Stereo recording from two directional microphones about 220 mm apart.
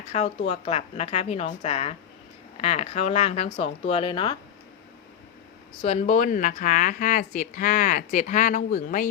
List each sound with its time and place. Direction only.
0.1 s a woman's voice: 30° left (ahead or behind)
5.8 s speech: 30° left (ahead or behind)